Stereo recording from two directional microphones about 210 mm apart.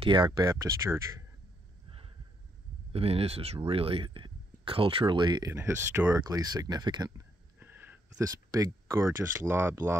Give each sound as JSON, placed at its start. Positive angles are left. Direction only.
{"t": 0.0, "sound": "speech", "side_deg": -20}
{"t": 2.9, "sound": "speech", "side_deg": -30}